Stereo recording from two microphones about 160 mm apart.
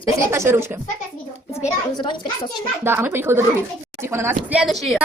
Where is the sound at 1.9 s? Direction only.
30° left (ahead or behind).